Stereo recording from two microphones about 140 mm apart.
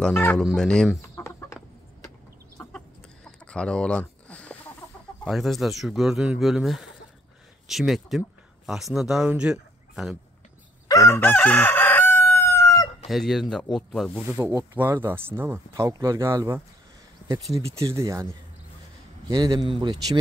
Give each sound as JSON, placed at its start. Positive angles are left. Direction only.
{"t": 0.0, "sound": "speech", "side_deg": 15}
{"t": 0.4, "sound": "speech", "side_deg": 5}
{"t": 1.1, "sound": "chicken", "side_deg": 20}
{"t": 2.6, "sound": "chicken", "side_deg": 10}
{"t": 5.2, "sound": "speech", "side_deg": 0}
{"t": 10.9, "sound": "crowing", "side_deg": 20}
{"t": 13.1, "sound": "speech", "side_deg": 0}
{"t": 14.3, "sound": "speech", "side_deg": -20}